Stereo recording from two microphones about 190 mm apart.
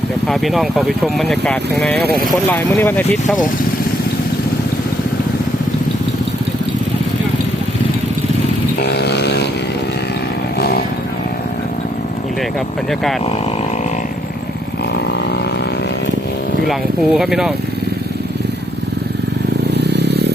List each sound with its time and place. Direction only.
0.3 s speech: centre (ahead or behind)
8.8 s a sound: 60° left (ahead or behind)
16.6 s speech: centre (ahead or behind)
19.7 s vehicle: 60° right (ahead or behind)